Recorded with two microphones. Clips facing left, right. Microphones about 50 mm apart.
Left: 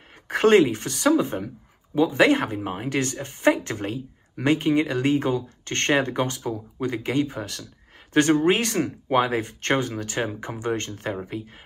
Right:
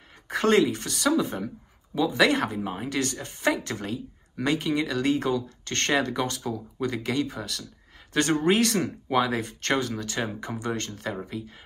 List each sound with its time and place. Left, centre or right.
0.3 s speech: left